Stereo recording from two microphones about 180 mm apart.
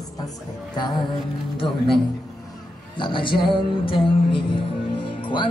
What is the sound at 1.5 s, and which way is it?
Music, 30° left (ahead or behind).